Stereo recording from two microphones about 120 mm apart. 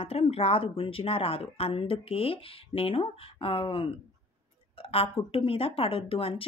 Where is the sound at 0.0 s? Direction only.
55° left (ahead or behind).